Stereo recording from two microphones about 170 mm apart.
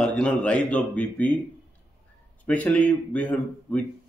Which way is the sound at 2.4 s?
10° left (ahead or behind).